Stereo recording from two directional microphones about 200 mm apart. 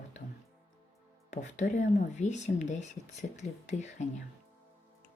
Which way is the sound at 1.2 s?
35° left (ahead or behind).